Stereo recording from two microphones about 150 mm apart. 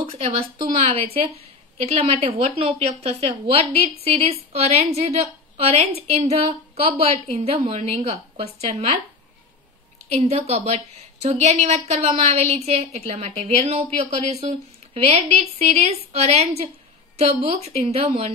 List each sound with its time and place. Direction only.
0.0 s a woman's voice: 40° right (ahead or behind)
10.0 s a woman's voice: 40° right (ahead or behind)
15.0 s a woman's voice: 45° right (ahead or behind)